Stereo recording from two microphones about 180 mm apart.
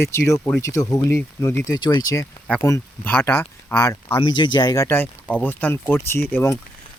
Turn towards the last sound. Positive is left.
turn(degrees=10)  # may be behind; listen again after turning